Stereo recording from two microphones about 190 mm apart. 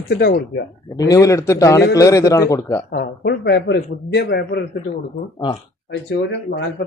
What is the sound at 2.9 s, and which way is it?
A man's voice, 55° left (ahead or behind).